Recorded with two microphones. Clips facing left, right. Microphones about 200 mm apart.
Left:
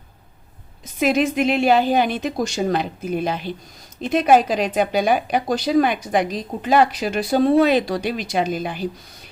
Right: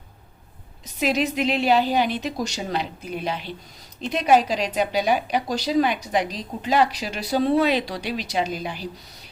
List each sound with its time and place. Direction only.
0.9 s a woman's voice: 50° left (ahead or behind)